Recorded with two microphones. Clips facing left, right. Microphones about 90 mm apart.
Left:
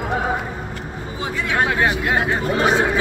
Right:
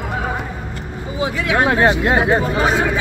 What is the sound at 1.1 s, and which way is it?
Speech, 10° right (ahead or behind).